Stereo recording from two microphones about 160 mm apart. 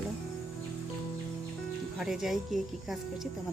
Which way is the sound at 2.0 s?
Centre (ahead or behind).